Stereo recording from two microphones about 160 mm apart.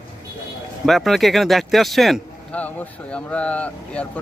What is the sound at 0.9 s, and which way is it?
A man's voice, centre (ahead or behind).